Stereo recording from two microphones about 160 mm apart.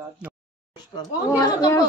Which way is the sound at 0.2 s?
10° right (ahead or behind).